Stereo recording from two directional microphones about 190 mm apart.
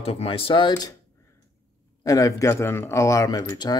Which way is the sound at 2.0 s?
20° left (ahead or behind).